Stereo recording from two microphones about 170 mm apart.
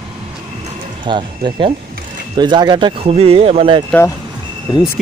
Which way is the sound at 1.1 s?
25° right (ahead or behind).